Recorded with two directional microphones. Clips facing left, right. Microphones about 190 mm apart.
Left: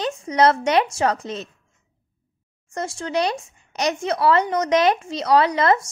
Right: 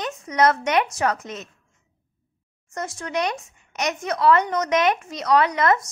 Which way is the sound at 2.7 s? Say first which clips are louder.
Left 3 dB; 30° left (ahead or behind).